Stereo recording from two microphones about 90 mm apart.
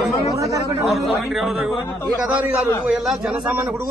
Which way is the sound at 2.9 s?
5° right (ahead or behind).